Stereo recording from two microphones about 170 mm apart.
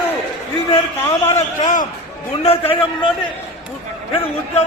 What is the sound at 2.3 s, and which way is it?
Speech, 35° left (ahead or behind).